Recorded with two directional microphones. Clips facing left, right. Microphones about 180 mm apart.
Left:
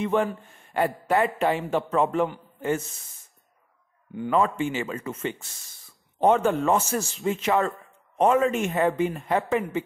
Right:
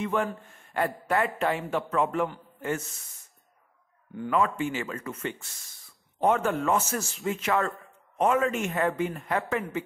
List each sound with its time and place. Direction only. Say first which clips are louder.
0.0 s a man's voice: left 4 dB; 20° left (ahead or behind)
4.1 s a man's voice: left 3 dB; 20° left (ahead or behind)